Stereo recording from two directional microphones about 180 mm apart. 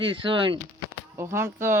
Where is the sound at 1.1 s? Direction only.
15° right (ahead or behind).